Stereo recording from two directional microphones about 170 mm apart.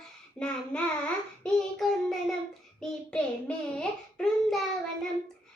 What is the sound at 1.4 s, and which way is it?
Child singing, centre (ahead or behind).